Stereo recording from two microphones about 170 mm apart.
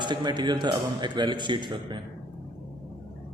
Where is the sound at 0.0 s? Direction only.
25° right (ahead or behind).